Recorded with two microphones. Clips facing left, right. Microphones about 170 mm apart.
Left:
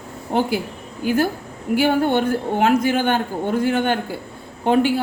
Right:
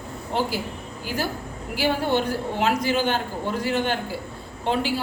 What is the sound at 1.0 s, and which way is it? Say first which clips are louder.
A man's voice: left 9 dB; 50° left (ahead or behind).